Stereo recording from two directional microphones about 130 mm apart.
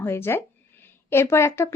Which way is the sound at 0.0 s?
20° left (ahead or behind).